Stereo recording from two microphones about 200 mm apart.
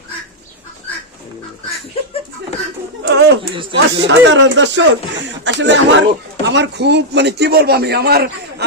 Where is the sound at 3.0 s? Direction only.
60° right (ahead or behind).